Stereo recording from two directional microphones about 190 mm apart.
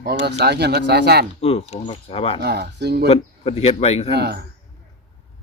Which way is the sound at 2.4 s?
60° right (ahead or behind).